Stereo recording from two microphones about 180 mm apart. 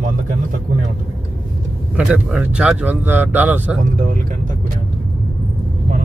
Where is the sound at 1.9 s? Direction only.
5° right (ahead or behind).